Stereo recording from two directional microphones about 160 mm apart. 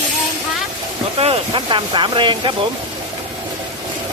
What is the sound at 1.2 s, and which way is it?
Speech, 35° right (ahead or behind).